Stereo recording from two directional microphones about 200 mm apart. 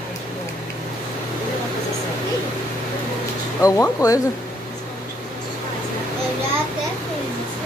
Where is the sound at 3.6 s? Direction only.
15° left (ahead or behind).